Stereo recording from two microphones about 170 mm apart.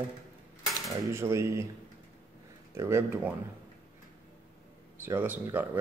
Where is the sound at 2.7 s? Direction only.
15° right (ahead or behind).